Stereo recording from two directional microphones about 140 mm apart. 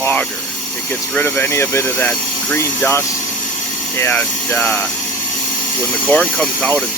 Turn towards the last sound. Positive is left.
turn(degrees=10)  # may be behind; listen again after turning